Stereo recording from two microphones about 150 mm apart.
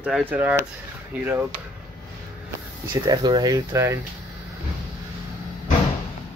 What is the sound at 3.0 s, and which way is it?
Speech, 30° right (ahead or behind).